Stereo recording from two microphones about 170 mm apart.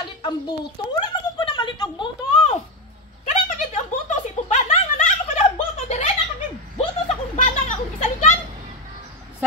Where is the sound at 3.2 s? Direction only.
45° left (ahead or behind).